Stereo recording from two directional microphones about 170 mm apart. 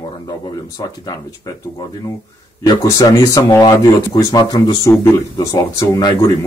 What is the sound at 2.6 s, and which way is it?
Speech, 25° left (ahead or behind).